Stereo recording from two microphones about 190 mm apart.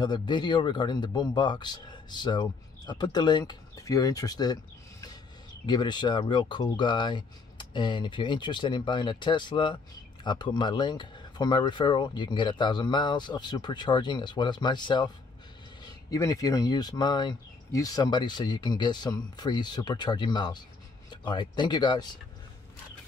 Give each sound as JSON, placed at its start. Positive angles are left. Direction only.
{"t": 0.0, "sound": "speech", "side_deg": 25}
{"t": 5.7, "sound": "speech", "side_deg": 25}